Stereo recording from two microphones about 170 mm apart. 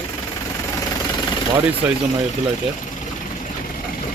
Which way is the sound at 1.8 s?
10° right (ahead or behind).